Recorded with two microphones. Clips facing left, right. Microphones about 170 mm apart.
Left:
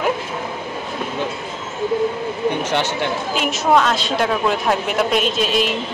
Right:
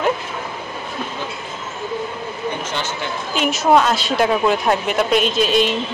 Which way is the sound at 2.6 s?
70° left (ahead or behind).